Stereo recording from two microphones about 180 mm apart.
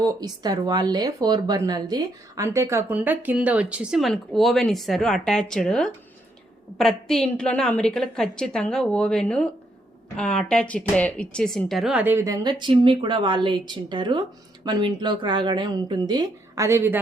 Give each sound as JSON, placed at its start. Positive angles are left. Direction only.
{"t": 0.0, "sound": "a woman's voice", "side_deg": -20}